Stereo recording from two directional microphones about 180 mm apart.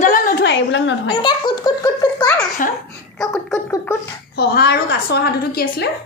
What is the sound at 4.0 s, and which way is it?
A woman's voice, 65° left (ahead or behind).